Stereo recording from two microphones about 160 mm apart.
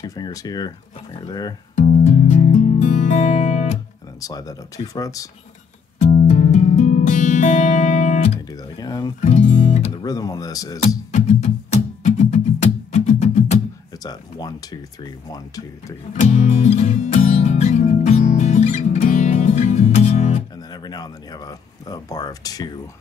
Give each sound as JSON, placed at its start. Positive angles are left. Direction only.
{"t": 0.0, "sound": "speech", "side_deg": 25}
{"t": 1.8, "sound": "music", "side_deg": 50}
{"t": 4.2, "sound": "speech", "side_deg": 25}
{"t": 5.9, "sound": "music", "side_deg": 50}
{"t": 8.5, "sound": "music", "side_deg": 25}
{"t": 9.2, "sound": "music", "side_deg": 45}
{"t": 10.0, "sound": "speech", "side_deg": 25}
{"t": 11.1, "sound": "music", "side_deg": 45}
{"t": 14.0, "sound": "a sound", "side_deg": 25}
{"t": 15.2, "sound": "speech", "side_deg": 25}
{"t": 16.2, "sound": "music", "side_deg": 45}
{"t": 20.7, "sound": "speech", "side_deg": 25}